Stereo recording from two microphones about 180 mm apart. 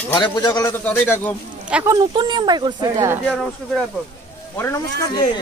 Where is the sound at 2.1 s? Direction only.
25° right (ahead or behind).